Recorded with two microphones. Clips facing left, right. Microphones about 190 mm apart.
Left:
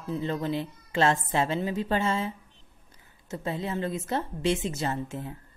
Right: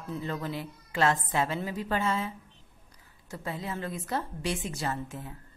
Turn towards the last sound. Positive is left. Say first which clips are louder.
# left 3 dB
turn(degrees=25)  # may be behind; listen again after turning